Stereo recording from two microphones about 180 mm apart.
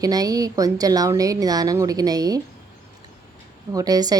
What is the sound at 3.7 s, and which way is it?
Speech, 20° right (ahead or behind).